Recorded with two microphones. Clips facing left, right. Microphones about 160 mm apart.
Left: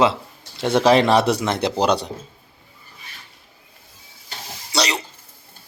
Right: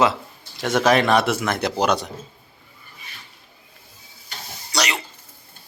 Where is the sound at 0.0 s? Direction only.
30° left (ahead or behind).